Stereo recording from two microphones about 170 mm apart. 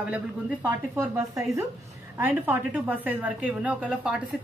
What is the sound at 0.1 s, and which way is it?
A woman's voice, 10° right (ahead or behind).